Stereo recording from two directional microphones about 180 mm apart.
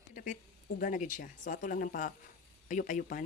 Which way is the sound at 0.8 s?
45° left (ahead or behind).